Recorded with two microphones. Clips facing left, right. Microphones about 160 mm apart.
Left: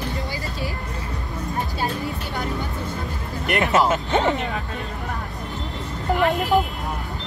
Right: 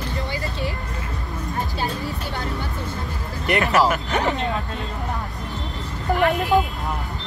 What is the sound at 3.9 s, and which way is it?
Speech, 20° left (ahead or behind).